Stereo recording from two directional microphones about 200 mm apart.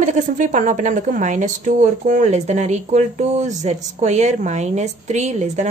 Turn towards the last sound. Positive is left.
turn(degrees=-35)  # may be behind; listen again after turning